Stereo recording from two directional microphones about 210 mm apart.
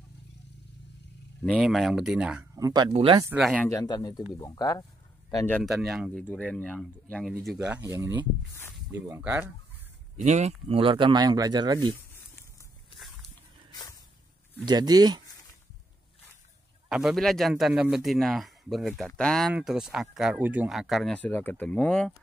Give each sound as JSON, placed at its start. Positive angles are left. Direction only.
{"t": 1.4, "sound": "a man's voice", "side_deg": 5}
{"t": 2.5, "sound": "speech", "side_deg": -20}
{"t": 3.3, "sound": "speech", "side_deg": -5}
{"t": 3.5, "sound": "speech", "side_deg": 15}
{"t": 5.6, "sound": "a man's voice", "side_deg": 0}
{"t": 7.5, "sound": "speech", "side_deg": -10}
{"t": 10.1, "sound": "speech", "side_deg": -35}
{"t": 13.7, "sound": "vehicle", "side_deg": 20}
{"t": 14.6, "sound": "speech", "side_deg": -20}
{"t": 16.9, "sound": "a man's voice", "side_deg": 0}